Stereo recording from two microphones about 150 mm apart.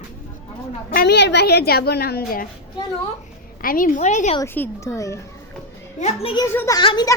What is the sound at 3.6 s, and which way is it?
Speech, 70° left (ahead or behind).